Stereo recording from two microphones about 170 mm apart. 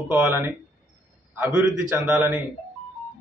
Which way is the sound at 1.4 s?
5° right (ahead or behind).